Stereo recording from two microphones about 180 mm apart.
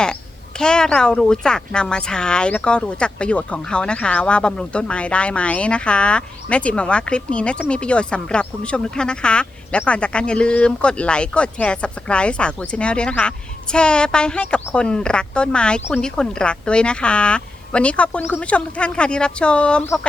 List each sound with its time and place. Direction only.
0.6 s speech: 5° left (ahead or behind)